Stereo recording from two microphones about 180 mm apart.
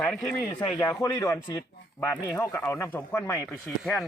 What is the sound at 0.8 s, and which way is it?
Speech, 15° left (ahead or behind).